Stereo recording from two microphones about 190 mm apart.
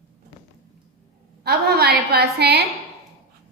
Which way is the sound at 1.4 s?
55° right (ahead or behind).